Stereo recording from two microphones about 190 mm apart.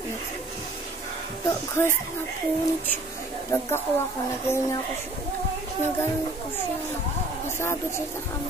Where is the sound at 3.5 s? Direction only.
15° left (ahead or behind).